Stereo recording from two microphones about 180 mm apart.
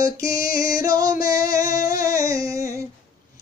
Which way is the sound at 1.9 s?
20° right (ahead or behind).